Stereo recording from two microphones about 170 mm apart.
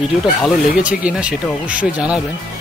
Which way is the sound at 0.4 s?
5° right (ahead or behind).